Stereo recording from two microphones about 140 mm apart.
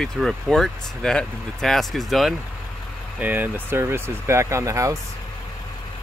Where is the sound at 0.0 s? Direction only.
5° left (ahead or behind).